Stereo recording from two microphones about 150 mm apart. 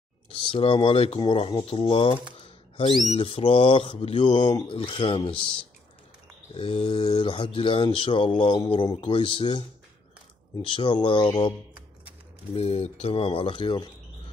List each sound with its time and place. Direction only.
0.3 s speech: 35° left (ahead or behind)
3.2 s speech: 40° left (ahead or behind)
6.5 s speech: 35° left (ahead or behind)
12.5 s speech: 45° left (ahead or behind)